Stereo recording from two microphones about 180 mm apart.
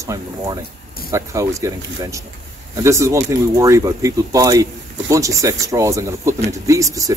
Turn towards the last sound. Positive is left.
turn(degrees=-20)  # may be behind; listen again after turning